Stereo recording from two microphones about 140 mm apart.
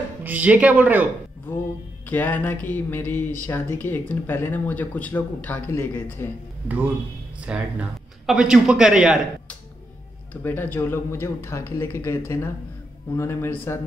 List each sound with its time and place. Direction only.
0.2 s a man's voice: 10° right (ahead or behind)
1.5 s speech: 15° left (ahead or behind)
7.3 s a man's voice: 10° right (ahead or behind)
10.3 s speech: 10° left (ahead or behind)